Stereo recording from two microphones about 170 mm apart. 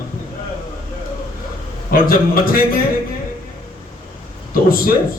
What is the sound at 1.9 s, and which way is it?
Speech, 60° left (ahead or behind).